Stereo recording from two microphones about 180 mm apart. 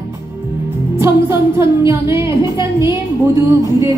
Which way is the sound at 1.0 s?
15° right (ahead or behind).